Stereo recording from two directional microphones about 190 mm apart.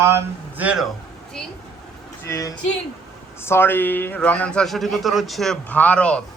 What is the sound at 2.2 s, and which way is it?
A man's voice, 15° left (ahead or behind).